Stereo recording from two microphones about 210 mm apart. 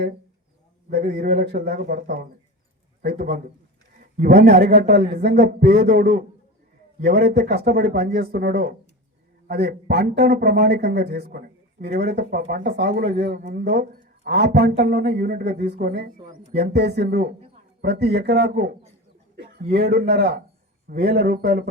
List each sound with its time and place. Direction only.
0.9 s a man's voice: 50° right (ahead or behind)